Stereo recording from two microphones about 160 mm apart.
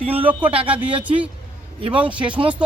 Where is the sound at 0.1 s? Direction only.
10° right (ahead or behind).